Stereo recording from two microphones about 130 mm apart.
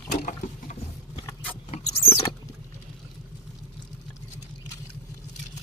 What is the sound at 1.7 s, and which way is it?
Rodents, 50° left (ahead or behind).